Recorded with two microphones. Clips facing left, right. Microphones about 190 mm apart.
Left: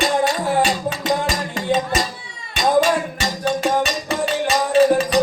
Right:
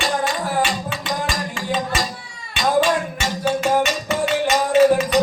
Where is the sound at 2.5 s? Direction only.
40° left (ahead or behind).